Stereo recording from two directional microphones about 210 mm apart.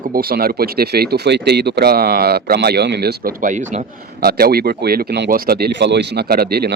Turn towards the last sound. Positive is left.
turn(degrees=-50)  # may be behind; listen again after turning